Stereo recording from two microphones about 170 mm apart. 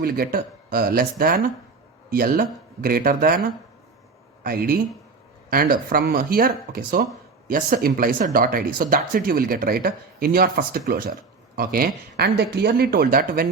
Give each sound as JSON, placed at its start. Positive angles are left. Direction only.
{"t": 0.0, "sound": "speech", "side_deg": -60}
{"t": 4.4, "sound": "speech", "side_deg": -60}